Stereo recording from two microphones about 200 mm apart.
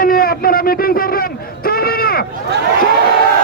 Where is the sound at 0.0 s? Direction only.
45° left (ahead or behind).